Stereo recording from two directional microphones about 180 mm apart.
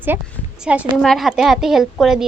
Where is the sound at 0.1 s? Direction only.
10° right (ahead or behind).